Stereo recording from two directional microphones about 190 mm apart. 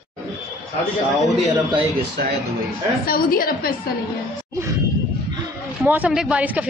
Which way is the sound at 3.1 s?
50° left (ahead or behind).